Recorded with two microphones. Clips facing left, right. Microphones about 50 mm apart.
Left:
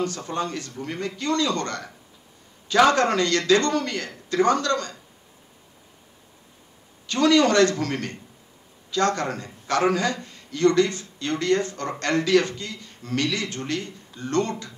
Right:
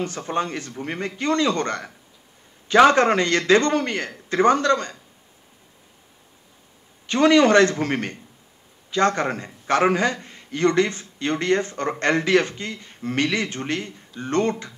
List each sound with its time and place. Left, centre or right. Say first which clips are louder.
0.0 s a man's voice: right 2 dB; right
7.1 s a man's voice: right 3 dB; right